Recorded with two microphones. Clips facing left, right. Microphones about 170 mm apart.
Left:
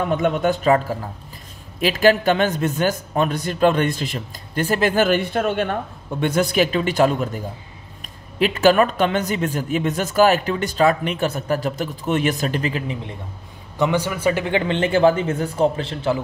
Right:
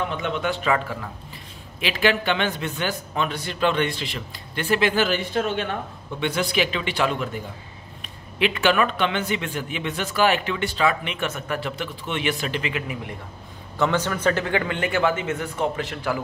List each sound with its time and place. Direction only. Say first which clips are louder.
0.1 s a man's voice: left 7 dB; 45° left (ahead or behind); by 13.1 s 30° left (ahead or behind)
13.7 s speech: left 2 dB; 15° left (ahead or behind)